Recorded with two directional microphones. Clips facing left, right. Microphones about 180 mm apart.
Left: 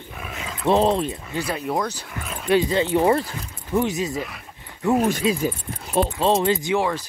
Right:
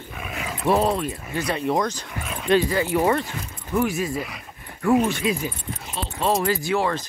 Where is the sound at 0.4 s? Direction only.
20° right (ahead or behind).